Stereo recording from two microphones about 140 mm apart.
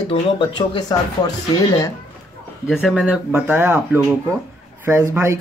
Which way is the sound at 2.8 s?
5° right (ahead or behind).